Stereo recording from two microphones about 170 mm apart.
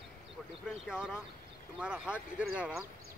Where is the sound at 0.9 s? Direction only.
5° right (ahead or behind).